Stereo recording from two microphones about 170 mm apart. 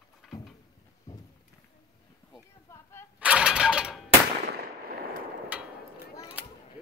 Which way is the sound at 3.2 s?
5° right (ahead or behind).